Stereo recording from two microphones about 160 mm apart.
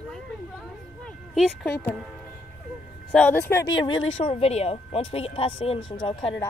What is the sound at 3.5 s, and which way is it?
Speech, 25° left (ahead or behind).